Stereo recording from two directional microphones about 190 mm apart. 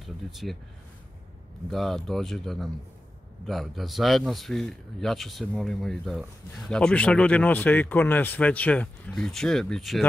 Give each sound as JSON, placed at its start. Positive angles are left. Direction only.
{"t": 0.0, "sound": "speech", "side_deg": 0}
{"t": 1.7, "sound": "speech", "side_deg": 0}